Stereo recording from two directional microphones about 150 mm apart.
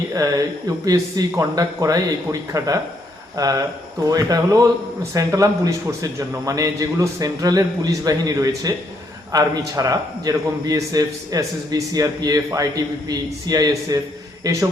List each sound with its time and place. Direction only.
0.1 s a man's voice: 25° right (ahead or behind)